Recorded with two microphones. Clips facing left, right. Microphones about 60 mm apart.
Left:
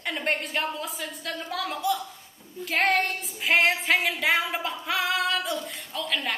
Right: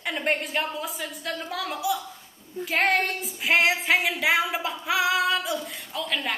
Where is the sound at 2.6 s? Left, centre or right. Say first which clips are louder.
Right 1 dB; centre.